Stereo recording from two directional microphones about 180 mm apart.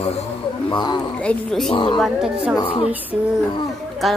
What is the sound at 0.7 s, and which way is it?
Speech, 25° left (ahead or behind).